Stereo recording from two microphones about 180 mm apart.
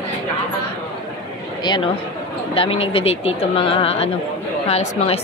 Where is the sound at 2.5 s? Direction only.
30° left (ahead or behind).